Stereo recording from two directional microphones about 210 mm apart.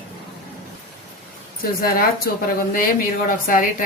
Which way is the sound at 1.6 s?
45° left (ahead or behind).